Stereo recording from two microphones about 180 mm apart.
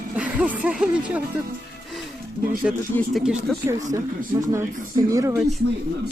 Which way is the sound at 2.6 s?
5° right (ahead or behind).